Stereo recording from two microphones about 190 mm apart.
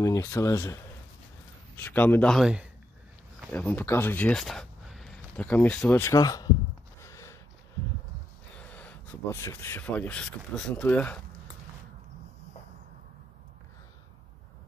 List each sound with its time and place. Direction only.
0.0 s speech: 15° left (ahead or behind)
1.8 s speech: 10° left (ahead or behind)
7.0 s a sound: 15° left (ahead or behind)
8.5 s speech: 5° left (ahead or behind)